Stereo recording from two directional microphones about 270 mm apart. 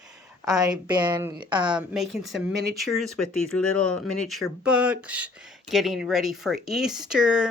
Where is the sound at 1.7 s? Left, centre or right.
Centre.